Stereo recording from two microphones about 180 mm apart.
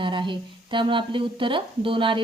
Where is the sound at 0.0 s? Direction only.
25° right (ahead or behind).